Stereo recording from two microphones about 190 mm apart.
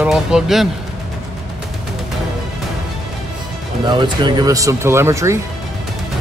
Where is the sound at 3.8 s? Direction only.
25° right (ahead or behind).